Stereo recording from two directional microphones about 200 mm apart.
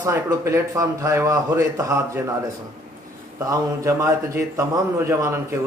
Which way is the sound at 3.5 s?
15° right (ahead or behind).